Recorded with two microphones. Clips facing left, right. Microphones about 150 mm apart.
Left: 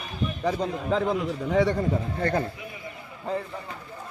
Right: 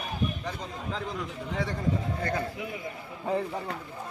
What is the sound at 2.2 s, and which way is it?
Speech, 50° left (ahead or behind).